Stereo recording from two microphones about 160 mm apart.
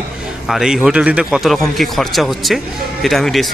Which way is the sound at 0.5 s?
5° right (ahead or behind).